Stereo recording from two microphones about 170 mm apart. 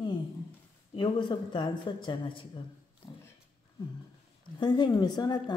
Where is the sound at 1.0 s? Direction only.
25° left (ahead or behind).